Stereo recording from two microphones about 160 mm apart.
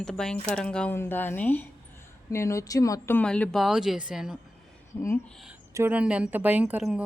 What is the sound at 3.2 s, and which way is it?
Speech, 10° left (ahead or behind).